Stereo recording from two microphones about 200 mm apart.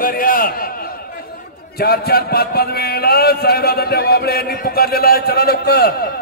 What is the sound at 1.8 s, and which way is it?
Speech, 50° left (ahead or behind).